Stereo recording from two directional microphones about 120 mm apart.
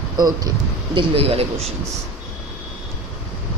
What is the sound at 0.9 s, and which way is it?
Speech, 55° right (ahead or behind).